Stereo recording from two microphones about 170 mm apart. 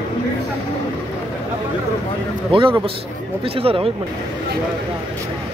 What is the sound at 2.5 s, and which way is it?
A man's voice, 30° right (ahead or behind).